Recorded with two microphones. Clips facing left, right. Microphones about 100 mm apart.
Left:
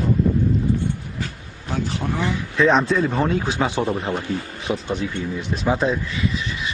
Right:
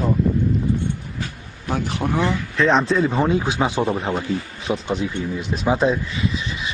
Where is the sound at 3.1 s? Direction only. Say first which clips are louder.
Right 2 dB; 15° right (ahead or behind).